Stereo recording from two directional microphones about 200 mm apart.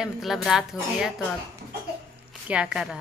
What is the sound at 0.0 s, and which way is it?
A child's voice, centre (ahead or behind).